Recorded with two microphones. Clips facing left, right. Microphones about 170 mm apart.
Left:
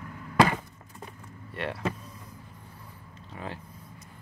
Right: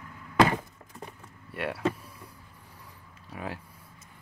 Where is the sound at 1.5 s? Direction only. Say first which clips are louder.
Right 1 dB; 5° right (ahead or behind).